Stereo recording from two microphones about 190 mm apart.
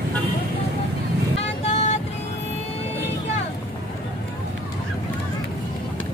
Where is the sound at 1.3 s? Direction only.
35° left (ahead or behind).